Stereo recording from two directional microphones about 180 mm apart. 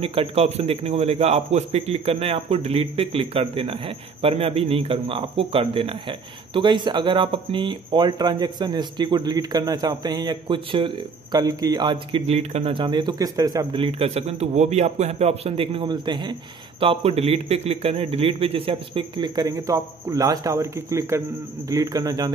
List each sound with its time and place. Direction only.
0.0 s a man's voice: 30° right (ahead or behind)